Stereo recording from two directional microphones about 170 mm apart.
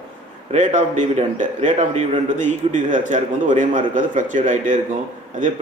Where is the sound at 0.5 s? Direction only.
45° right (ahead or behind).